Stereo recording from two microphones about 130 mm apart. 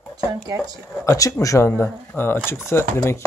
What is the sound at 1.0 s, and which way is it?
Speech, 25° left (ahead or behind).